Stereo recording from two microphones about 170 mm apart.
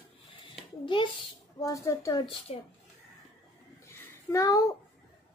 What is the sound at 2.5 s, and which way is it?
Speech, 40° left (ahead or behind).